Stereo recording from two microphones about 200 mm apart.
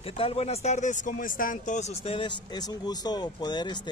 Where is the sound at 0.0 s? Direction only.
30° left (ahead or behind).